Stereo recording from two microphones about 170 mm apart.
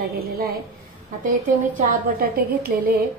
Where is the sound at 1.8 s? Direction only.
55° right (ahead or behind).